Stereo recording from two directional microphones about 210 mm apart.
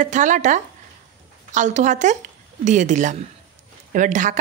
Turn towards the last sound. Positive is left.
turn(degrees=-35)  # may be behind; listen again after turning